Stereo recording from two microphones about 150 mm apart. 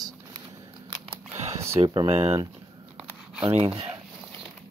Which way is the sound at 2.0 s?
45° right (ahead or behind).